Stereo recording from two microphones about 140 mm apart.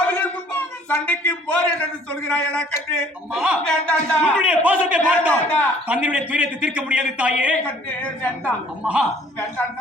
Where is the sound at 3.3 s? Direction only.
5° right (ahead or behind).